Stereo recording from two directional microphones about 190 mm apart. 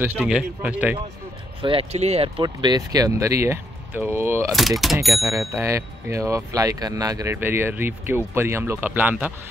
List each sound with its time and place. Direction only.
0.0 s speech: 10° right (ahead or behind)
1.6 s speech: 30° right (ahead or behind); by 4.5 s 10° right (ahead or behind)
4.5 s speech: centre (ahead or behind)
5.1 s speech: 15° right (ahead or behind)